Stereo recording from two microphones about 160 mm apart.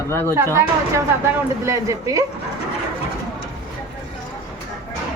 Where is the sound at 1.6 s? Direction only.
20° right (ahead or behind).